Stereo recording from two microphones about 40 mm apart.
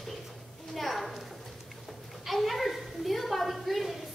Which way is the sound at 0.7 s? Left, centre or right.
Centre.